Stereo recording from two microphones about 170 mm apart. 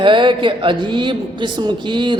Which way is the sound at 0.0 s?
30° right (ahead or behind).